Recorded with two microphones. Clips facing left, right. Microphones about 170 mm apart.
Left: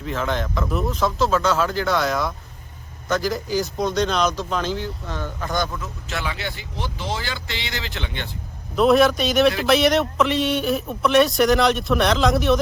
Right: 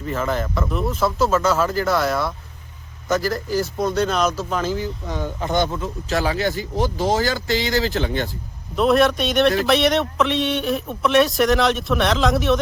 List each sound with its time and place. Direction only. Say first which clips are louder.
0.0 s speech: right 2 dB; centre (ahead or behind); by 8.3 s 40° right (ahead or behind)
8.7 s speech: left 1 dB; centre (ahead or behind)